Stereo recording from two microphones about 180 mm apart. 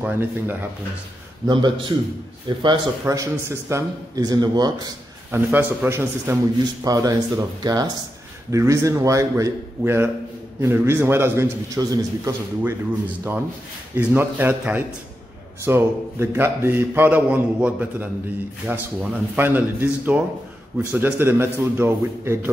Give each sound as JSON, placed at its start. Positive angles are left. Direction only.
{"t": 0.0, "sound": "a man's voice", "side_deg": -10}
{"t": 1.5, "sound": "a man's voice", "side_deg": -25}
{"t": 5.3, "sound": "a man's voice", "side_deg": -10}
{"t": 13.9, "sound": "a man's voice", "side_deg": -10}